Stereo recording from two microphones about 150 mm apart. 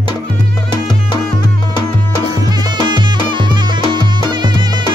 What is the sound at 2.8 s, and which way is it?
Music, 30° right (ahead or behind).